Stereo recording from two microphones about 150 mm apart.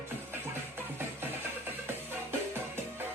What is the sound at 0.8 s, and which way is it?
Music, 15° right (ahead or behind).